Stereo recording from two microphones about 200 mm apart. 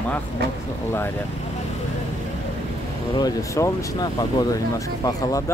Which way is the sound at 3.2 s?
15° left (ahead or behind).